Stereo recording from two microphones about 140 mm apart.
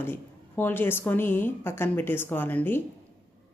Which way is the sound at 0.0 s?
15° left (ahead or behind).